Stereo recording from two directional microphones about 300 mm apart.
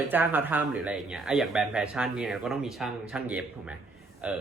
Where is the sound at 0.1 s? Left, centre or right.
Centre.